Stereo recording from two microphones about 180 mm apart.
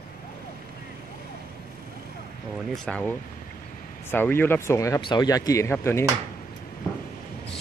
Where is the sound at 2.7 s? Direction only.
5° left (ahead or behind).